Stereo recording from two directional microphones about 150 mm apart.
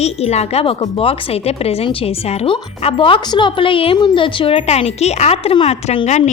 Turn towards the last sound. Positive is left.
turn(degrees=50)  # may be behind; listen again after turning